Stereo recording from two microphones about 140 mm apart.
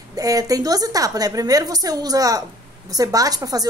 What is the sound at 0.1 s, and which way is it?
A woman's voice, 25° right (ahead or behind).